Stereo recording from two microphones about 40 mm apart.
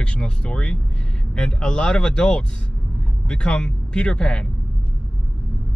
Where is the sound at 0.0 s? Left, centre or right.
Left.